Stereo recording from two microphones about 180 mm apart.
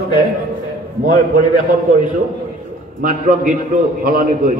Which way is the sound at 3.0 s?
50° right (ahead or behind).